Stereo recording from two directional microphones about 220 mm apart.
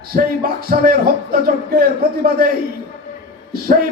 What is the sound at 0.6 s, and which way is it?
Speech, 40° right (ahead or behind).